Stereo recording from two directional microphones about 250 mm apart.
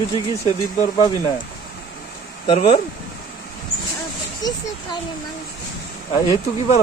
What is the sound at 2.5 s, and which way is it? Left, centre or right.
Speech, left.